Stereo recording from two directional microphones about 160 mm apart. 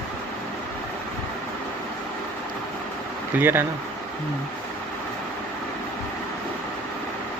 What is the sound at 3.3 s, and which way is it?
Speech, 15° right (ahead or behind).